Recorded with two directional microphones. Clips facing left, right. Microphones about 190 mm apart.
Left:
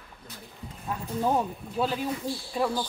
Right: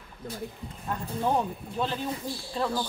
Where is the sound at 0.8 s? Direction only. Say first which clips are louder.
Left 1 dB; 5° left (ahead or behind).